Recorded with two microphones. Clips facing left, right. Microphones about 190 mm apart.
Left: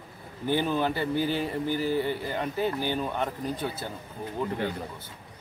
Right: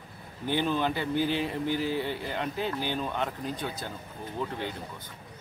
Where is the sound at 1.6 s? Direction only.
50° left (ahead or behind).